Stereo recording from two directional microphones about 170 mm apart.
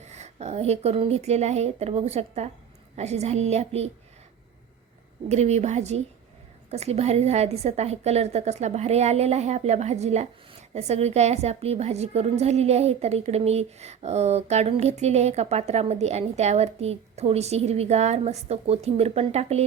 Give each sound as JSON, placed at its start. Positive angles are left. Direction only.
{"t": 0.1, "sound": "a woman's voice", "side_deg": -40}
{"t": 5.3, "sound": "a woman's voice", "side_deg": -40}